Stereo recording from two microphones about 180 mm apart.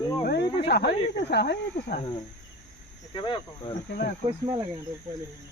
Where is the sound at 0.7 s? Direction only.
65° left (ahead or behind).